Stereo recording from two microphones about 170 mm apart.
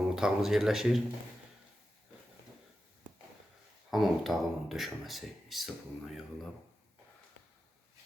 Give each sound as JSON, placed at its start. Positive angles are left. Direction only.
{"t": 0.0, "sound": "speech", "side_deg": -5}
{"t": 3.9, "sound": "speech", "side_deg": 0}